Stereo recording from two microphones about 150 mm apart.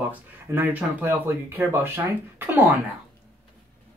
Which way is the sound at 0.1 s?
10° right (ahead or behind).